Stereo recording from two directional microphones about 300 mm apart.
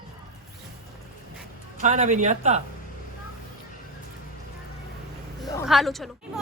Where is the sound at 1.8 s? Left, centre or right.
Right.